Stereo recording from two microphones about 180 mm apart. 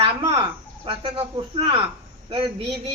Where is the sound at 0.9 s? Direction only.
25° right (ahead or behind).